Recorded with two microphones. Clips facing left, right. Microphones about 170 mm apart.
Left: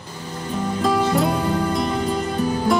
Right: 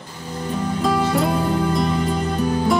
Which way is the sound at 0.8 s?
Centre (ahead or behind).